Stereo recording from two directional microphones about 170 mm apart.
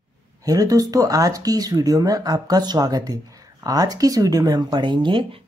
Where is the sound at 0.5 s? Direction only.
20° right (ahead or behind).